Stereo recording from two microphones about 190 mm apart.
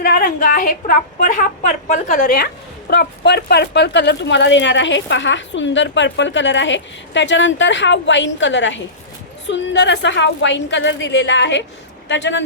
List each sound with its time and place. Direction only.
0.0 s a woman's voice: 50° left (ahead or behind)
2.9 s speech: 60° left (ahead or behind)